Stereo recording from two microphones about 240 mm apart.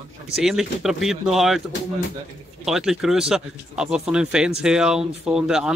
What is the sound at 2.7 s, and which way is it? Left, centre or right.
Speech, centre.